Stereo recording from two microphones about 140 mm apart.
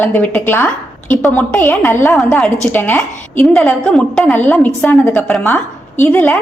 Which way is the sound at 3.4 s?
5° left (ahead or behind).